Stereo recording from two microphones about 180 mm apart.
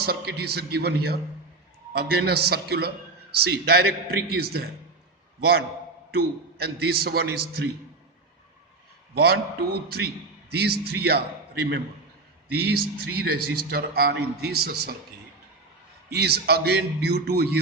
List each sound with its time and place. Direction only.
0.0 s a man's voice: 60° right (ahead or behind)
9.1 s a man's voice: 60° right (ahead or behind)
12.5 s a man's voice: 60° right (ahead or behind)
16.0 s a man's voice: 65° right (ahead or behind)